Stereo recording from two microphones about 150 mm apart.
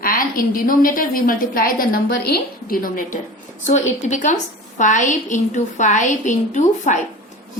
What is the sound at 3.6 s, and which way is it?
A woman's voice, 55° left (ahead or behind).